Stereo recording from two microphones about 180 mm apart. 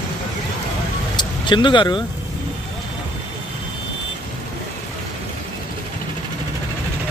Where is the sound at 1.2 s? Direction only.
25° left (ahead or behind).